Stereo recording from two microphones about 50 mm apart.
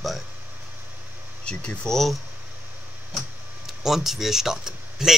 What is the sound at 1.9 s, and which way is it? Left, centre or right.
Speech, centre.